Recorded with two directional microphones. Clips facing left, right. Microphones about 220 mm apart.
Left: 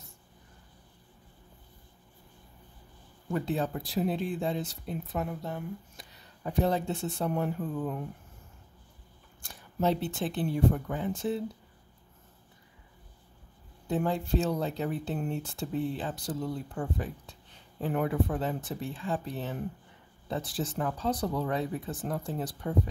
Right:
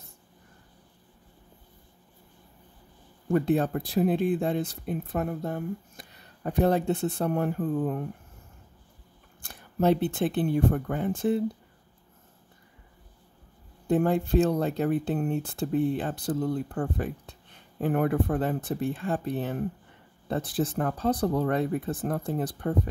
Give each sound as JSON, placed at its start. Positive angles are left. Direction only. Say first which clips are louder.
{"t": 3.3, "sound": "speech", "louder": "right 7 dB", "side_deg": -55}
{"t": 9.4, "sound": "speech", "louder": "right 4 dB", "side_deg": -55}
{"t": 13.8, "sound": "speech", "louder": "right 6 dB", "side_deg": -55}